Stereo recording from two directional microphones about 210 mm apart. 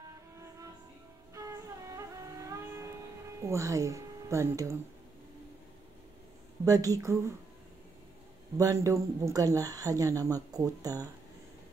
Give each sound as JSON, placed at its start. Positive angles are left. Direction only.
{"t": 1.3, "sound": "music", "side_deg": -15}
{"t": 3.4, "sound": "speech", "side_deg": -15}
{"t": 6.6, "sound": "speech", "side_deg": -15}
{"t": 8.5, "sound": "speech", "side_deg": -15}